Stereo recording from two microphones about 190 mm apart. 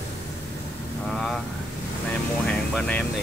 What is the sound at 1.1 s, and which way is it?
Speech, centre (ahead or behind).